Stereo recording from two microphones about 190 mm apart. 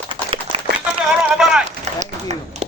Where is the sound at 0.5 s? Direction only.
30° right (ahead or behind).